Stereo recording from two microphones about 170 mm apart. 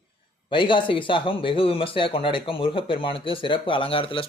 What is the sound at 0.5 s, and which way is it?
Speech, 30° left (ahead or behind).